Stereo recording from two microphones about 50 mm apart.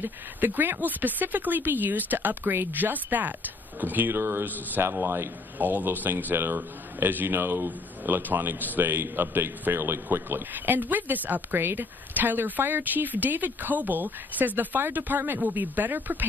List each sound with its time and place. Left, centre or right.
0.0 s a man's voice: right
5.6 s a man's voice: right
11.5 s speech: right